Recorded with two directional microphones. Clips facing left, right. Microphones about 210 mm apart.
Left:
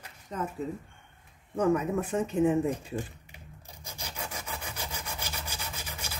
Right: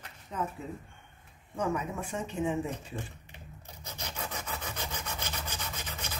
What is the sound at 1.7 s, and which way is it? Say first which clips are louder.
Speech: left 7 dB; 45° left (ahead or behind).